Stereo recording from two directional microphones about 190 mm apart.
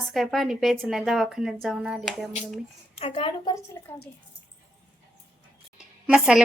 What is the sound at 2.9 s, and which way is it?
Speech, 30° left (ahead or behind).